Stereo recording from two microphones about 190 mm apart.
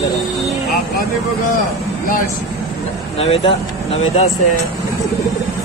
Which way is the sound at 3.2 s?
30° left (ahead or behind).